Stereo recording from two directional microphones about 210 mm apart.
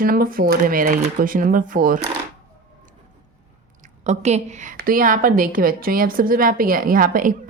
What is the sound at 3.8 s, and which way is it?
A woman's voice, 35° right (ahead or behind).